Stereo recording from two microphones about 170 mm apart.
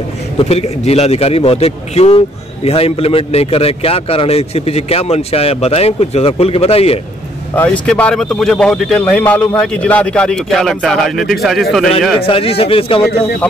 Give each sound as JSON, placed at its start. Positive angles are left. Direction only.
{"t": 0.4, "sound": "a man's voice", "side_deg": 35}
{"t": 7.5, "sound": "speech", "side_deg": 5}
{"t": 12.2, "sound": "a man's voice", "side_deg": 35}